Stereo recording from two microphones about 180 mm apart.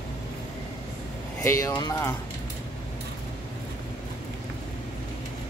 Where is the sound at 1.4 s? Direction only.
15° left (ahead or behind).